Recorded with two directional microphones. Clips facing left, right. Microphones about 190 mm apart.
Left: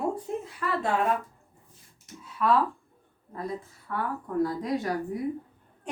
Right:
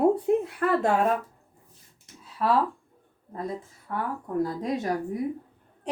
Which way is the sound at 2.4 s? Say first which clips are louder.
Even; 35° right (ahead or behind).